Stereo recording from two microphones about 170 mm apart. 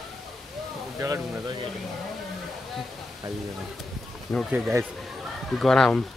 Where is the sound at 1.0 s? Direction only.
20° right (ahead or behind).